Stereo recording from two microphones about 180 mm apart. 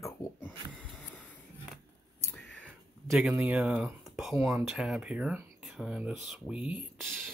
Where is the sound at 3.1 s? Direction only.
10° right (ahead or behind).